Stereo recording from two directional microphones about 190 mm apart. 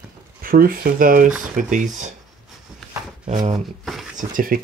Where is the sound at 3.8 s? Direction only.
Centre (ahead or behind).